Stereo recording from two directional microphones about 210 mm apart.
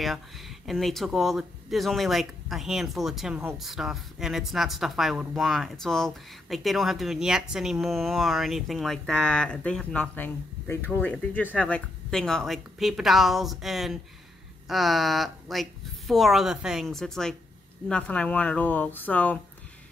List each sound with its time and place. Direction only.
0.0 s speech: centre (ahead or behind)